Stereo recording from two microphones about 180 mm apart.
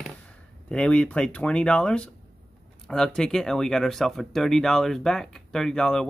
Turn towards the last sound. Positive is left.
turn(degrees=5)  # may be behind; listen again after turning